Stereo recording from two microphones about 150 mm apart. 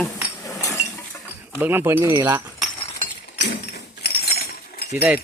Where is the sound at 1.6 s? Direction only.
15° right (ahead or behind).